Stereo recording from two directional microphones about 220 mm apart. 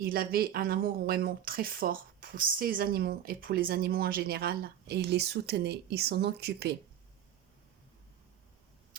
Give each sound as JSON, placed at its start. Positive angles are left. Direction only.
{"t": 0.0, "sound": "speech", "side_deg": -45}